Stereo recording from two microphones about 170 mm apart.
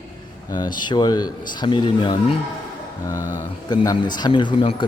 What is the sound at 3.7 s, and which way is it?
Speech, 20° left (ahead or behind).